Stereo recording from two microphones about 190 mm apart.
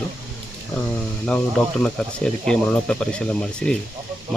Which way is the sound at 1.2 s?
5° left (ahead or behind).